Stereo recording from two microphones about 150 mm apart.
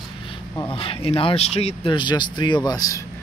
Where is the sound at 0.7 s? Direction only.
35° left (ahead or behind).